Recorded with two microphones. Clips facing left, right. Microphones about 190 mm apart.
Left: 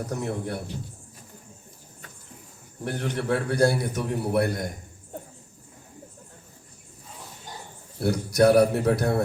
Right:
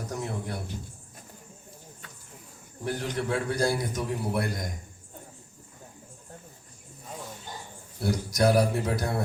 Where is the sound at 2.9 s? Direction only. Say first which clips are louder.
Left 3 dB; 60° left (ahead or behind).